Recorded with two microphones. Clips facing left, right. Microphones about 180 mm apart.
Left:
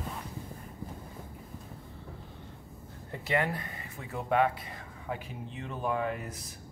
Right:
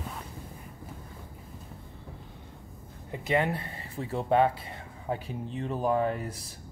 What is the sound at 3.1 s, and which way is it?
Speech, 20° right (ahead or behind).